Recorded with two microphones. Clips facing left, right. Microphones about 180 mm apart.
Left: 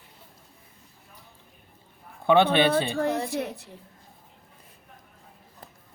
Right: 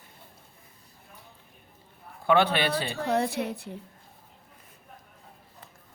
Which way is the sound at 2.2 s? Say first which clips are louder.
Left 4 dB; 20° left (ahead or behind).